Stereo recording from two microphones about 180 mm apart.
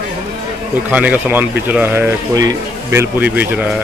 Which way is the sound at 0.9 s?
10° right (ahead or behind).